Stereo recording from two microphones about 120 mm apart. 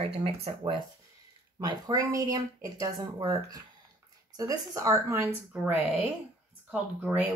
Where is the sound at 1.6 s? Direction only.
35° right (ahead or behind).